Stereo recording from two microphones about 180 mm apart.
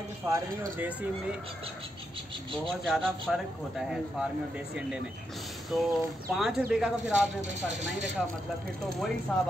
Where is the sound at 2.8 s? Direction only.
Centre (ahead or behind).